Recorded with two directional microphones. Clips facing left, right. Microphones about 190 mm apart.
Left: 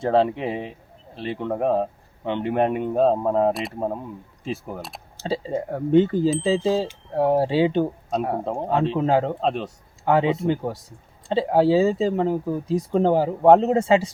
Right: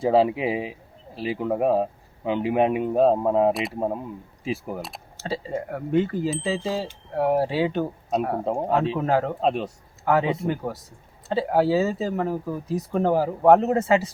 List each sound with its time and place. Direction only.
0.0 s a man's voice: 5° right (ahead or behind)
5.2 s speech: 25° left (ahead or behind)
8.4 s a man's voice: 5° right (ahead or behind)
9.0 s speech: 25° left (ahead or behind)
9.4 s a man's voice: 5° right (ahead or behind)
10.1 s speech: 25° left (ahead or behind)